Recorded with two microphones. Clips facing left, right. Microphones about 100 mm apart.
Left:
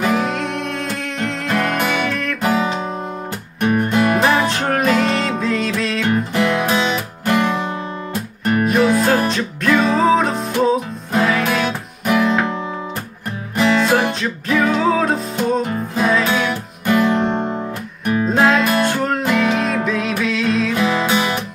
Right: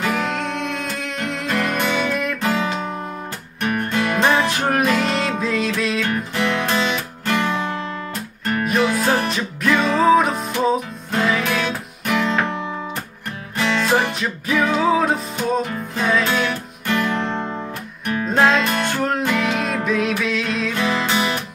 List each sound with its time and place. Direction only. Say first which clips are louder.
0.0 s music: left 3 dB; 5° left (ahead or behind)
2.0 s music: even; 15° right (ahead or behind)
3.6 s music: left 5 dB; 20° left (ahead or behind)
4.2 s music: left 2 dB; 5° left (ahead or behind)
4.5 s music: left 2 dB; 5° right (ahead or behind)
6.3 s music: left 1 dB; 15° left (ahead or behind)
8.6 s music: left 3 dB; centre (ahead or behind)
9.7 s music: left 3 dB; 10° left (ahead or behind)
9.9 s music: even; centre (ahead or behind)
13.6 s music: left 4 dB; 5° left (ahead or behind)
16.0 s music: left 2 dB; 10° left (ahead or behind)
17.2 s guitar: left 5 dB; 20° left (ahead or behind)
18.0 s music: left 2 dB; 10° left (ahead or behind)
20.7 s music: left 3 dB; 10° left (ahead or behind)